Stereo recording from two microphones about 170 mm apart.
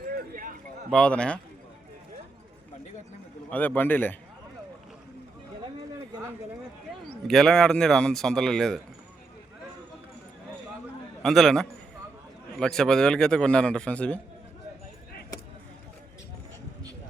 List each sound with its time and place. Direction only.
0.1 s a sound: 60° right (ahead or behind)
0.9 s a man's voice: 5° left (ahead or behind)
3.5 s a man's voice: 10° left (ahead or behind)
7.3 s a man's voice: centre (ahead or behind)
11.2 s a man's voice: centre (ahead or behind)